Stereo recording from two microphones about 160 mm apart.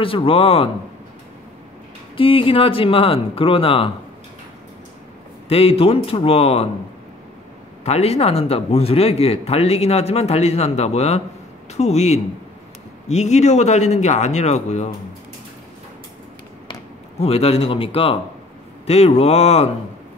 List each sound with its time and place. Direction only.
0.0 s speech: 35° left (ahead or behind)
2.1 s speech: 35° left (ahead or behind)
5.5 s speech: 35° left (ahead or behind)
7.8 s speech: 40° left (ahead or behind)
17.2 s speech: 40° left (ahead or behind)